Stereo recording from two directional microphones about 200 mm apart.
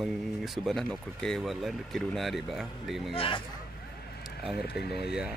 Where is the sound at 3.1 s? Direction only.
25° left (ahead or behind).